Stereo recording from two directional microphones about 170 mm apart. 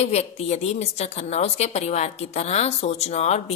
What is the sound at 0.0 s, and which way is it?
A woman's voice, 40° left (ahead or behind).